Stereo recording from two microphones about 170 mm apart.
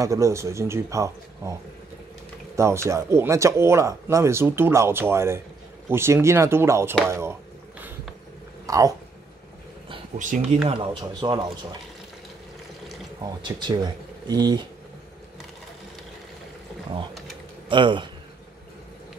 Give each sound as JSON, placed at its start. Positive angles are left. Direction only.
{"t": 0.0, "sound": "speech", "side_deg": -20}
{"t": 8.6, "sound": "speech", "side_deg": -20}
{"t": 10.7, "sound": "speech", "side_deg": -30}
{"t": 13.2, "sound": "speech", "side_deg": -25}
{"t": 17.6, "sound": "speech", "side_deg": -30}